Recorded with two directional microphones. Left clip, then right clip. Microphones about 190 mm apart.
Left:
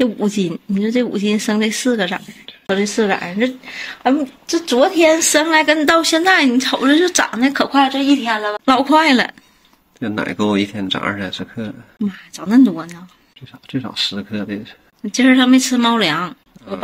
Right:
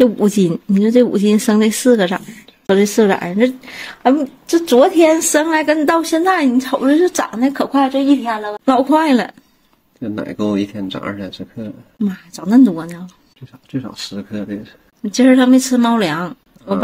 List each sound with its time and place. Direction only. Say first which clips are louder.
0.0 s speech: right 5 dB; 60° right (ahead or behind); by 9.3 s 35° right (ahead or behind)
9.9 s speech: left 2 dB; 10° left (ahead or behind)
12.0 s speech: right 2 dB; 40° right (ahead or behind)
13.7 s speech: left 6 dB; 10° left (ahead or behind)
15.0 s speech: right 1 dB; 40° right (ahead or behind)